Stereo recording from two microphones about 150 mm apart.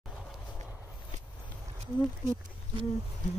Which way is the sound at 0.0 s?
Centre (ahead or behind).